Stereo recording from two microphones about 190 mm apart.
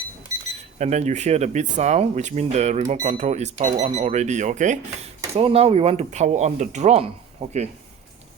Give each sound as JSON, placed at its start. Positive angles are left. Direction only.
{"t": 0.8, "sound": "speech", "side_deg": -35}